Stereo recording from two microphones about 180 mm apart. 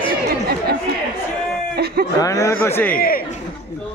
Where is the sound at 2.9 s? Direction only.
55° left (ahead or behind).